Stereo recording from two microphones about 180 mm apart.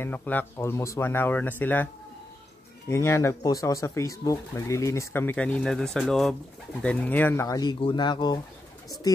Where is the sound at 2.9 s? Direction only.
15° left (ahead or behind).